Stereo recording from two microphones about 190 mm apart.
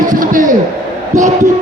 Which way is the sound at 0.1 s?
45° right (ahead or behind).